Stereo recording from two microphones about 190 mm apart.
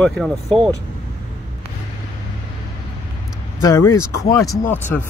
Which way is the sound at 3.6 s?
15° left (ahead or behind).